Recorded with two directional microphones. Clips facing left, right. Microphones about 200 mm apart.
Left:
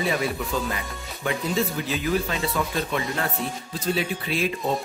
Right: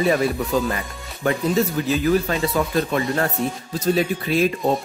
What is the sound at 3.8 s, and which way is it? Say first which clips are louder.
Speech: right 6 dB; 40° right (ahead or behind).